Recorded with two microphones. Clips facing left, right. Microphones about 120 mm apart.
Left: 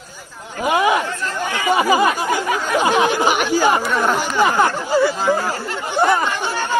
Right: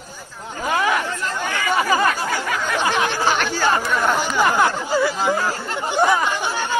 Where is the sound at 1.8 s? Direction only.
15° left (ahead or behind).